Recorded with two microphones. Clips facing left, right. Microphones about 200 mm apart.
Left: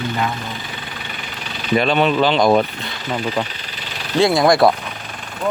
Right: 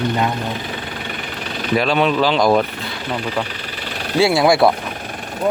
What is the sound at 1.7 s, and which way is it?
Speech, centre (ahead or behind).